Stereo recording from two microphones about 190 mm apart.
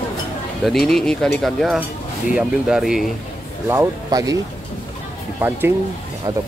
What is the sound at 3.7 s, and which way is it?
Speech, 15° right (ahead or behind).